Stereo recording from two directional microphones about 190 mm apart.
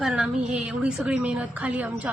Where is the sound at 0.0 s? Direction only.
5° right (ahead or behind).